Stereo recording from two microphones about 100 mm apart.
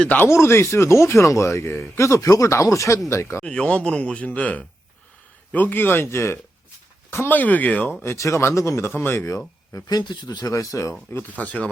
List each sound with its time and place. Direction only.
0.0 s speech: 15° left (ahead or behind)
0.3 s speech: 25° left (ahead or behind)
3.4 s speech: 10° left (ahead or behind)
8.0 s speech: 25° left (ahead or behind)
9.7 s speech: 45° left (ahead or behind)
11.1 s speech: 20° left (ahead or behind)